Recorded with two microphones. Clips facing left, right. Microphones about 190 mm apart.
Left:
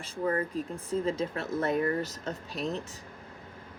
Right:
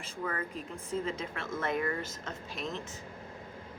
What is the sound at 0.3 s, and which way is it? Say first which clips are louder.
A woman's voice: left 8 dB; 40° left (ahead or behind).